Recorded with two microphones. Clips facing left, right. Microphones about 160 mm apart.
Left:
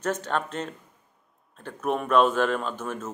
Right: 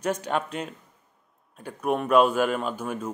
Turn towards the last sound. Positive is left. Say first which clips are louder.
# right 2 dB
turn(degrees=-10)  # may be behind; listen again after turning